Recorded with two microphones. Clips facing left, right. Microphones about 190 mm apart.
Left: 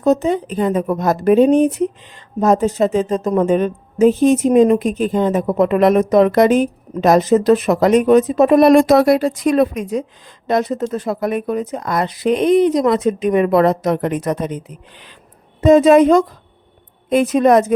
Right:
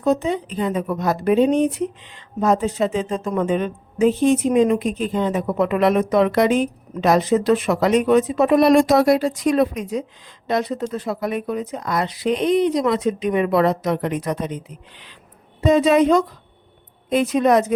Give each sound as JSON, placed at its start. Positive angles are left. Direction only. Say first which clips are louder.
{"t": 0.0, "sound": "speech", "louder": "left 4 dB", "side_deg": 45}